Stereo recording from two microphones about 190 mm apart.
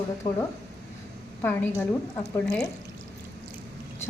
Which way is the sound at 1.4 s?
10° left (ahead or behind).